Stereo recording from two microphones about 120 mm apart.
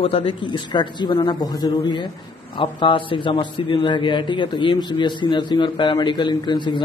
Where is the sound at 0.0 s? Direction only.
50° left (ahead or behind).